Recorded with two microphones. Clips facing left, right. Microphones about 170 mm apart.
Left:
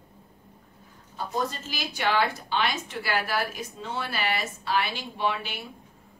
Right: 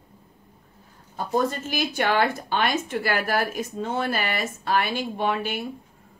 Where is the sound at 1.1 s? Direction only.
55° right (ahead or behind).